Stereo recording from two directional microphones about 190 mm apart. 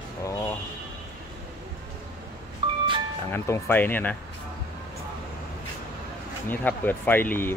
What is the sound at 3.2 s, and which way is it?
Speech, 10° left (ahead or behind).